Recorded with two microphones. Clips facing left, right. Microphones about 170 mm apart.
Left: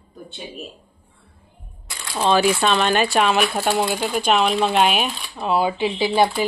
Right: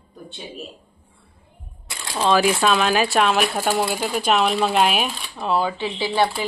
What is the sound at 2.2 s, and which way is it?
Speech, centre (ahead or behind).